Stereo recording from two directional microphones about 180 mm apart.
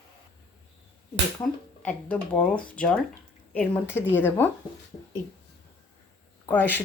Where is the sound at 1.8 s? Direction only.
5° left (ahead or behind).